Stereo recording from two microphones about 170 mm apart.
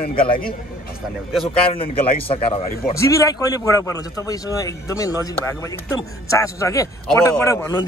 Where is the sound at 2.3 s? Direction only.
35° left (ahead or behind).